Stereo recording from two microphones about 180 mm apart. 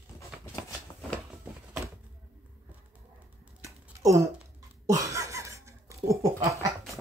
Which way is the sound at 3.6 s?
15° right (ahead or behind).